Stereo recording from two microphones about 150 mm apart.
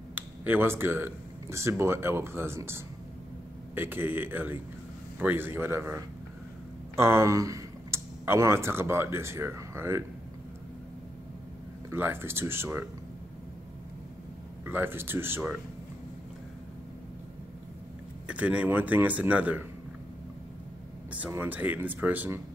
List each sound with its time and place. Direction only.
0.1 s speech: 15° right (ahead or behind)
11.9 s speech: 15° right (ahead or behind)
14.7 s speech: 15° right (ahead or behind)
18.3 s speech: 10° right (ahead or behind)
21.1 s speech: 10° right (ahead or behind)